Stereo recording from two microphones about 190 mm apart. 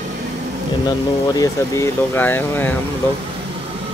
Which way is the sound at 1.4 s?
15° left (ahead or behind).